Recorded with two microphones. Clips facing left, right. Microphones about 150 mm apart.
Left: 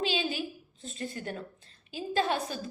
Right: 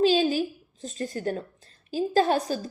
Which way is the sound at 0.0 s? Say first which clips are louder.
Right 10 dB; 40° right (ahead or behind).